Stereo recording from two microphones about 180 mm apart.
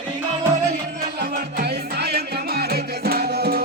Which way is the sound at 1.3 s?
60° right (ahead or behind).